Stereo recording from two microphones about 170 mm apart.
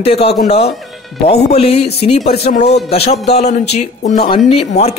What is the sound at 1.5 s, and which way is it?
Speech, 35° left (ahead or behind).